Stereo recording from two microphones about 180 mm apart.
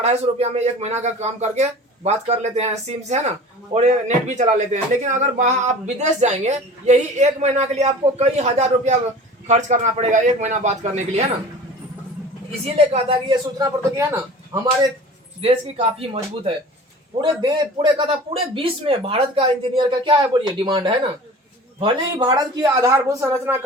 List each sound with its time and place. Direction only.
0.0 s speech: 35° right (ahead or behind)
12.7 s speech: 30° right (ahead or behind)
13.9 s speech: 15° right (ahead or behind)
15.4 s speech: 35° right (ahead or behind); by 23.6 s 15° right (ahead or behind)